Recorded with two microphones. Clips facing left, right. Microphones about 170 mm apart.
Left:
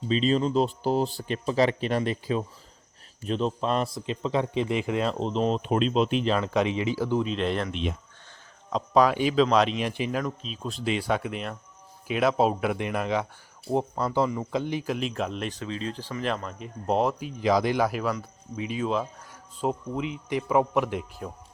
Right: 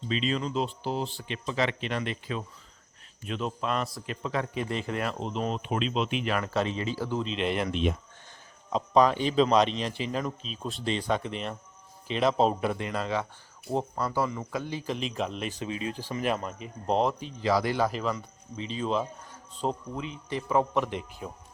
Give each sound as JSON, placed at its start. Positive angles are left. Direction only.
{"t": 0.1, "sound": "speech", "side_deg": 35}
{"t": 4.7, "sound": "a man's voice", "side_deg": 15}
{"t": 5.2, "sound": "speech", "side_deg": 30}
{"t": 6.2, "sound": "a man's voice", "side_deg": 20}
{"t": 7.3, "sound": "speech", "side_deg": -5}
{"t": 7.7, "sound": "speech", "side_deg": -45}
{"t": 8.7, "sound": "speech", "side_deg": 5}
{"t": 9.7, "sound": "a man's voice", "side_deg": 15}
{"t": 10.2, "sound": "a man's voice", "side_deg": 0}
{"t": 12.7, "sound": "a man's voice", "side_deg": 15}
{"t": 14.9, "sound": "speech", "side_deg": 0}
{"t": 15.5, "sound": "speech", "side_deg": -15}
{"t": 19.6, "sound": "a man's voice", "side_deg": 15}
{"t": 21.2, "sound": "speech", "side_deg": -5}